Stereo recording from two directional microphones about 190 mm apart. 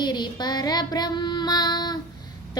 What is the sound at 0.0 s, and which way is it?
Child singing, 25° left (ahead or behind).